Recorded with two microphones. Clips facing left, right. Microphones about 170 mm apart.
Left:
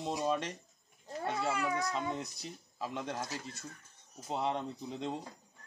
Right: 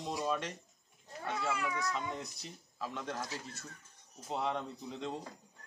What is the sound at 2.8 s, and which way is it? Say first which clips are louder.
Speech: left 2 dB; 20° left (ahead or behind).